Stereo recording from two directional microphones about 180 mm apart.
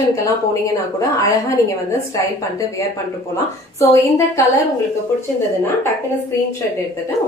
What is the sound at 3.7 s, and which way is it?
Speech, 15° left (ahead or behind).